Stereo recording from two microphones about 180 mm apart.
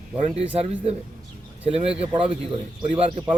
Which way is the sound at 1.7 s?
35° right (ahead or behind).